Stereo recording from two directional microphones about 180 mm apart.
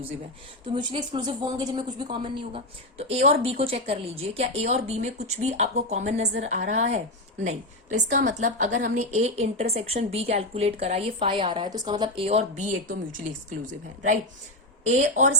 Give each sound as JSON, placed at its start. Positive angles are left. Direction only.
{"t": 0.9, "sound": "a woman's voice", "side_deg": -25}
{"t": 14.8, "sound": "a woman's voice", "side_deg": -40}